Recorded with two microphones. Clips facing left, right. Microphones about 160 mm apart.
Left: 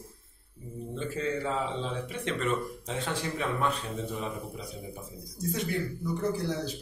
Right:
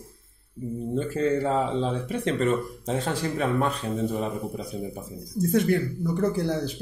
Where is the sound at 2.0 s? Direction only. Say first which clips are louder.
Right 7 dB; 40° right (ahead or behind).